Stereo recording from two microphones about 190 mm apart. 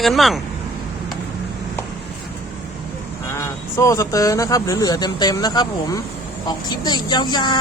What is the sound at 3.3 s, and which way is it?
Speech, 15° left (ahead or behind).